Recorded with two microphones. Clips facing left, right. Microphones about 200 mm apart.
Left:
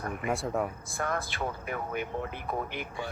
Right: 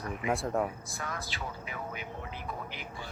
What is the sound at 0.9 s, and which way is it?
Speech, 55° left (ahead or behind).